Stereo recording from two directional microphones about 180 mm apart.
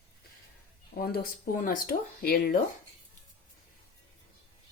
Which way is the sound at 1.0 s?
55° left (ahead or behind).